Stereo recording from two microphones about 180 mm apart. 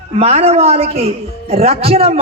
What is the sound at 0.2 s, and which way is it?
A man's voice, 35° right (ahead or behind).